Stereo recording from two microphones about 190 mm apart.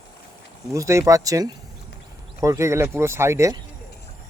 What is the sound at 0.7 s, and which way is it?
Speech, 15° right (ahead or behind).